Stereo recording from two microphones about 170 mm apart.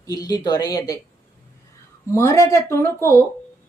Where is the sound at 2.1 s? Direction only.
15° left (ahead or behind).